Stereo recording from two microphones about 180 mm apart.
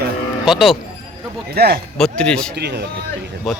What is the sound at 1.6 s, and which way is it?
Speech, 60° right (ahead or behind).